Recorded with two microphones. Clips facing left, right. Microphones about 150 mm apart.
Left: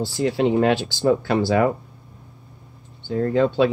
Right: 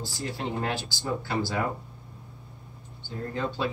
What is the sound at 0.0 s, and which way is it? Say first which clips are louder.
Speech: left 13 dB; 75° left (ahead or behind).